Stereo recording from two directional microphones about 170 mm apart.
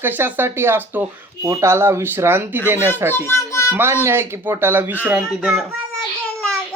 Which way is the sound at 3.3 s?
15° left (ahead or behind).